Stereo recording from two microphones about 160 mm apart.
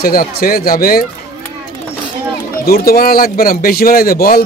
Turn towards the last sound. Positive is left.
turn(degrees=65)  # may be behind; listen again after turning